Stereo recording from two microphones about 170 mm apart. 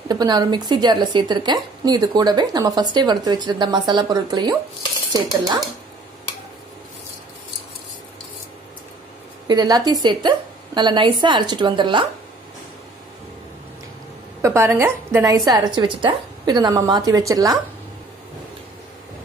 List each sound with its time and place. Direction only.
0.1 s a woman's voice: 25° right (ahead or behind)
9.5 s a woman's voice: 25° right (ahead or behind)
14.4 s a woman's voice: 15° right (ahead or behind)